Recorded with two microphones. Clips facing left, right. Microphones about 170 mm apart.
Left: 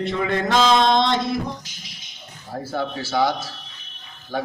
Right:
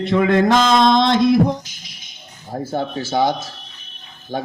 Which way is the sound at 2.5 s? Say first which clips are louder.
Right 3 dB; 20° right (ahead or behind).